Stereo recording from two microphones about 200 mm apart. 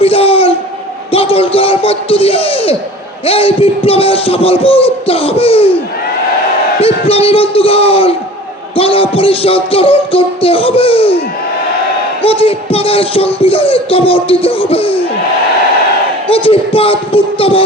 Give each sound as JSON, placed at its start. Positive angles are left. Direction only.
{"t": 0.0, "sound": "a sound", "side_deg": 30}
{"t": 1.1, "sound": "speech", "side_deg": 30}
{"t": 7.1, "sound": "speech", "side_deg": 30}
{"t": 12.2, "sound": "speech", "side_deg": 30}
{"t": 16.3, "sound": "speech", "side_deg": 30}